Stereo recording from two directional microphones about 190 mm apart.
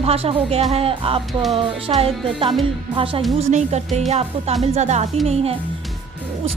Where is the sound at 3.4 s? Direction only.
35° right (ahead or behind).